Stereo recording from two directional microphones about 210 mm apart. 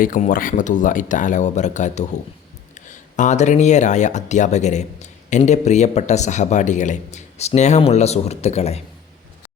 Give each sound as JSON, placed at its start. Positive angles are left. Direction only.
{"t": 0.0, "sound": "speech", "side_deg": 40}